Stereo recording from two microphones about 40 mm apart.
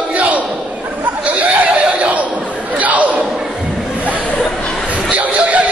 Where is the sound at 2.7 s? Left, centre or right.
Right.